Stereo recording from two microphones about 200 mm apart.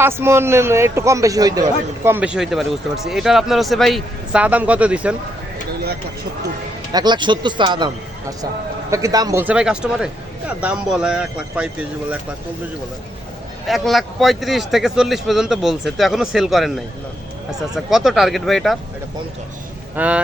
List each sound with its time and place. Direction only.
0.0 s a man's voice: 10° right (ahead or behind)
6.9 s speech: 20° right (ahead or behind)
8.9 s a man's voice: 15° right (ahead or behind)
13.7 s a man's voice: centre (ahead or behind)
17.8 s a man's voice: centre (ahead or behind)
20.0 s a man's voice: 5° right (ahead or behind)